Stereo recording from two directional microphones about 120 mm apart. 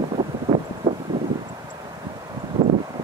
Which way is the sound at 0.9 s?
40° right (ahead or behind).